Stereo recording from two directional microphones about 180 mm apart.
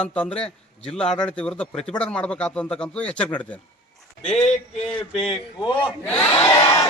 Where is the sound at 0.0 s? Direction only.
5° left (ahead or behind).